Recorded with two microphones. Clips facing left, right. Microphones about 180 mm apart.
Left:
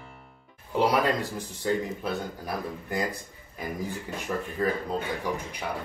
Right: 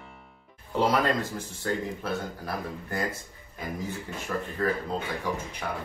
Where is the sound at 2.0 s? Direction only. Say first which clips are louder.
Left 1 dB; 15° left (ahead or behind).